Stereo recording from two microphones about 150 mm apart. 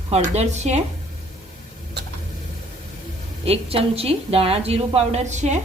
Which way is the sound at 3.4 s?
40° right (ahead or behind).